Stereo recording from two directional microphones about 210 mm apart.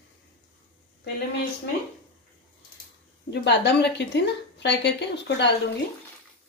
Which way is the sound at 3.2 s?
55° left (ahead or behind).